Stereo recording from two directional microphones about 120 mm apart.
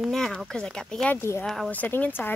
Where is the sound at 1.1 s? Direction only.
20° left (ahead or behind).